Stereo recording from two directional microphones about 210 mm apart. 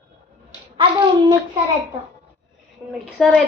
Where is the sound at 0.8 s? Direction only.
25° right (ahead or behind).